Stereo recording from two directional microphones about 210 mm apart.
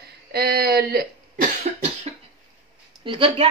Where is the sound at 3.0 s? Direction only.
25° right (ahead or behind).